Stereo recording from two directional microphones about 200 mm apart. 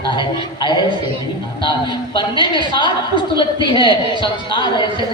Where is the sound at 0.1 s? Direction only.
20° left (ahead or behind).